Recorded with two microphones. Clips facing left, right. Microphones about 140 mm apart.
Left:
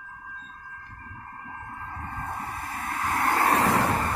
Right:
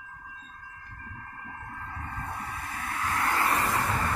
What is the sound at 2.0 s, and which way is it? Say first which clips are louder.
Waves: left 3 dB; 45° left (ahead or behind).